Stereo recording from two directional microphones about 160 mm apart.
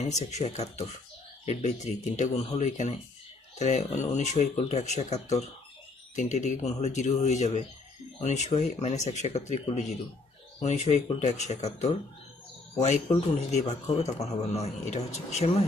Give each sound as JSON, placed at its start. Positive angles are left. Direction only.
{"t": 0.0, "sound": "a man's voice", "side_deg": 45}
{"t": 13.1, "sound": "a man's voice", "side_deg": 40}